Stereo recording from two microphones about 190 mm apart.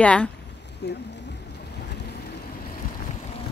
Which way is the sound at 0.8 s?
55° left (ahead or behind).